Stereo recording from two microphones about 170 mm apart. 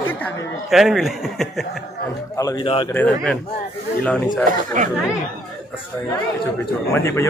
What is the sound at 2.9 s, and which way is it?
Speech, 10° left (ahead or behind).